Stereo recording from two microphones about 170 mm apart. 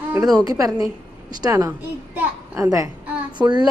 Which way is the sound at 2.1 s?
15° right (ahead or behind).